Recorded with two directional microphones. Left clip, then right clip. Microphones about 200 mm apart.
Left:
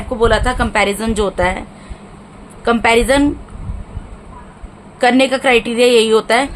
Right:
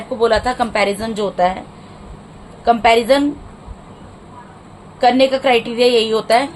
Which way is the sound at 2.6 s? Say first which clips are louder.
Even; 30° left (ahead or behind).